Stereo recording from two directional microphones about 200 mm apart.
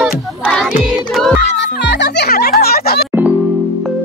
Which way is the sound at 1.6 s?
60° left (ahead or behind).